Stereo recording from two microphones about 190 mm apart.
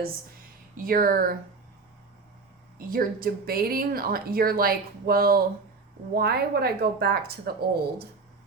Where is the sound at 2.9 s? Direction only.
50° right (ahead or behind).